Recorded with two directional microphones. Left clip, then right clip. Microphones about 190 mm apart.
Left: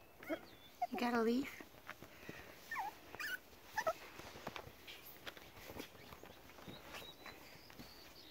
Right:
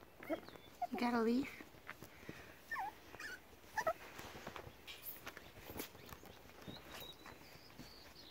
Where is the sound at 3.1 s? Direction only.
5° left (ahead or behind).